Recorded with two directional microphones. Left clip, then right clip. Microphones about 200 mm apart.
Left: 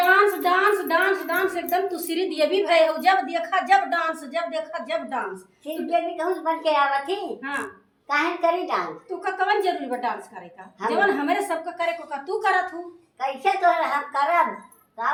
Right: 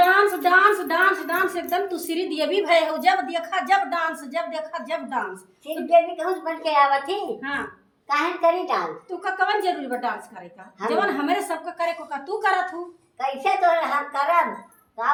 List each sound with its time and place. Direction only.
0.1 s a sound: 25° right (ahead or behind)
4.3 s speech: 20° right (ahead or behind)
5.9 s a woman's voice: centre (ahead or behind)
7.4 s speech: 15° right (ahead or behind)
8.0 s a child's voice: 5° left (ahead or behind)
9.2 s a woman's voice: 20° right (ahead or behind)
13.1 s a woman's voice: 5° left (ahead or behind)